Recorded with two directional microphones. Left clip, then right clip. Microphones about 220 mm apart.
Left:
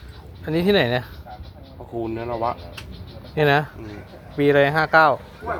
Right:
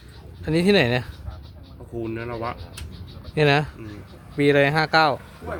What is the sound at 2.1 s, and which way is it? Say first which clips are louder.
Speech: left 4 dB; 30° right (ahead or behind).